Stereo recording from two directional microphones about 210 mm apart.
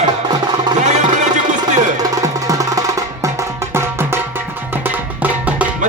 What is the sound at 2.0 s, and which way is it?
Music, 15° right (ahead or behind).